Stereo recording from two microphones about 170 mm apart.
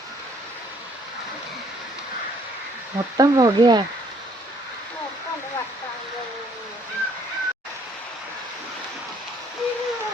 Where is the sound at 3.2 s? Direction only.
20° right (ahead or behind).